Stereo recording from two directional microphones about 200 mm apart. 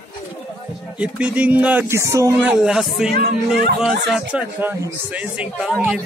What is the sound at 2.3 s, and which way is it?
Speech, 5° right (ahead or behind).